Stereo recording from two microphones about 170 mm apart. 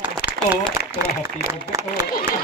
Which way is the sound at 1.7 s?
20° right (ahead or behind).